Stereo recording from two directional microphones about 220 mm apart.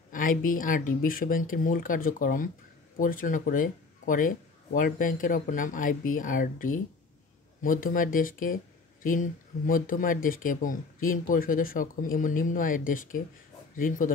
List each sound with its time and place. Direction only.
0.1 s speech: 40° left (ahead or behind)